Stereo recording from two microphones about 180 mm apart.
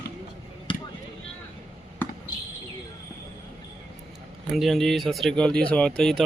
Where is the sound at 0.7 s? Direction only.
25° left (ahead or behind).